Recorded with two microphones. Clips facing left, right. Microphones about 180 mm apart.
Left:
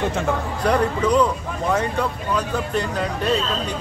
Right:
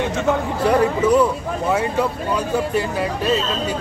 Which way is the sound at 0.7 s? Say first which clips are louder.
Right 3 dB; 5° right (ahead or behind).